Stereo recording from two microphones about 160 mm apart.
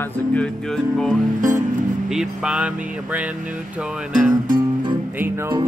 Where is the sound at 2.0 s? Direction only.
5° right (ahead or behind).